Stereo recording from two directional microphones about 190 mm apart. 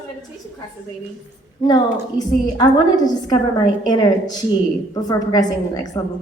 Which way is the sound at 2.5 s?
20° left (ahead or behind).